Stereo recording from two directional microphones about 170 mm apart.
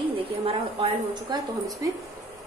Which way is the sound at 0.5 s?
30° right (ahead or behind).